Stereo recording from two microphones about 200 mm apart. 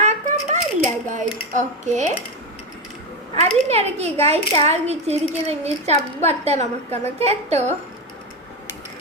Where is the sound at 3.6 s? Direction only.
30° right (ahead or behind).